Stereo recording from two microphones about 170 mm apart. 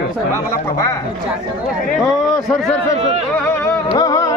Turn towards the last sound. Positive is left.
turn(degrees=20)  # may be behind; listen again after turning